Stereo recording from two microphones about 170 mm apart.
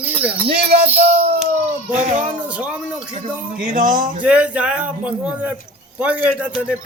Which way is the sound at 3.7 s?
50° right (ahead or behind).